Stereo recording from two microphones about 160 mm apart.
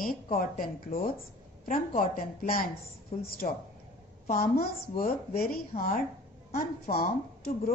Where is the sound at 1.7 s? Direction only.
60° left (ahead or behind).